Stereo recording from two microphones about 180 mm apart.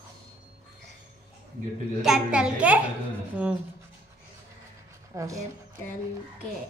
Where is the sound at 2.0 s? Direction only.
5° right (ahead or behind).